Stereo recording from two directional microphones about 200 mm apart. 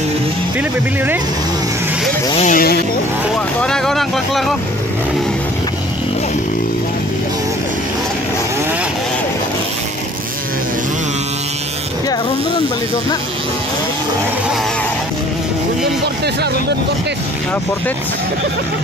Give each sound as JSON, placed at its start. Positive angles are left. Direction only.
{"t": 0.6, "sound": "speech", "side_deg": -10}
{"t": 2.3, "sound": "vehicle", "side_deg": 40}
{"t": 3.6, "sound": "speech", "side_deg": 5}